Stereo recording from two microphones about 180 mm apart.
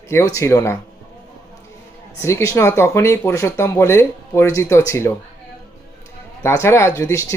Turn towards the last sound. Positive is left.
turn(degrees=15)  # may be behind; listen again after turning